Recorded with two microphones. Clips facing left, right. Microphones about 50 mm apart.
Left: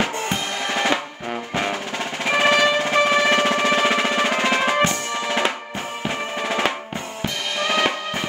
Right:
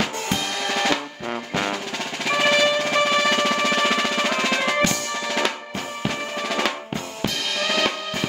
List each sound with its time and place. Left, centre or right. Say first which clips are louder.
0.0 s drum kit: left 1 dB; centre
1.5 s drum: left 1 dB; centre
2.2 s music: left 2 dB; centre
6.0 s drum: left 2 dB; centre